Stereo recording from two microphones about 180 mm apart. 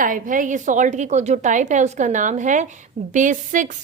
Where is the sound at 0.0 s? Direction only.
45° right (ahead or behind).